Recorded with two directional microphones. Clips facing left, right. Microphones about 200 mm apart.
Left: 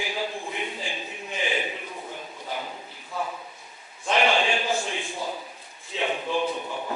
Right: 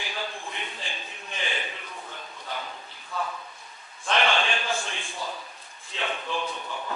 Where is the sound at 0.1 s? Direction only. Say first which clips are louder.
Left 4 dB; 15° left (ahead or behind).